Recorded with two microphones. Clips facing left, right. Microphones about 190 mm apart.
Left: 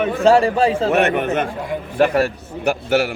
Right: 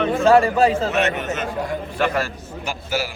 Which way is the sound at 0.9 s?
55° left (ahead or behind).